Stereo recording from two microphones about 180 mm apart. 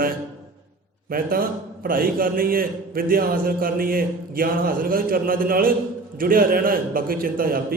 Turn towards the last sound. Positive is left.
turn(degrees=-50)  # may be behind; listen again after turning